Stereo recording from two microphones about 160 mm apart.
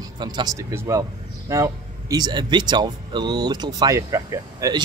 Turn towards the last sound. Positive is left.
turn(degrees=-20)  # may be behind; listen again after turning